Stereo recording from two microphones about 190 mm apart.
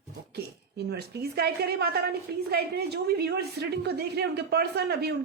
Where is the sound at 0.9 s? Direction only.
60° right (ahead or behind).